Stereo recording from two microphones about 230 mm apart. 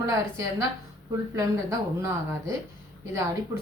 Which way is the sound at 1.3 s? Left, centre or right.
Centre.